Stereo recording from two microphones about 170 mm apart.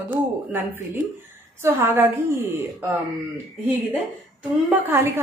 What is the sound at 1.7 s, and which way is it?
Speech, 10° right (ahead or behind).